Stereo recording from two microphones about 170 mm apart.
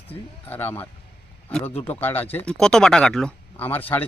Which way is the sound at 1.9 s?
10° left (ahead or behind).